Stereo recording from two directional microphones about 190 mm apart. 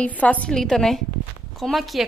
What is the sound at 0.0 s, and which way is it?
A woman's voice, 5° left (ahead or behind).